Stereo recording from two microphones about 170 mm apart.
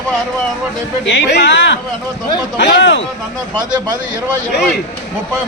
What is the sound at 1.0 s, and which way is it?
Speech, 85° left.